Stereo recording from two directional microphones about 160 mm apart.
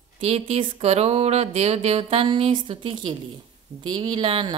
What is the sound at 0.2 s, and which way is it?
Speech, 40° right (ahead or behind).